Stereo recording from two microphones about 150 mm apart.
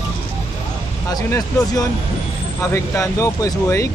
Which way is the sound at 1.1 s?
25° left (ahead or behind).